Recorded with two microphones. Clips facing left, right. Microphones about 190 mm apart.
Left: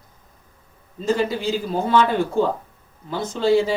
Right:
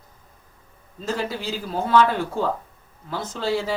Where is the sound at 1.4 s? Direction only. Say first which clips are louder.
Left 4 dB; 25° left (ahead or behind).